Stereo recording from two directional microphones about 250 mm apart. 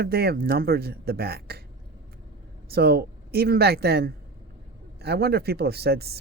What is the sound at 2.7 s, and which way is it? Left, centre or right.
Speech, right.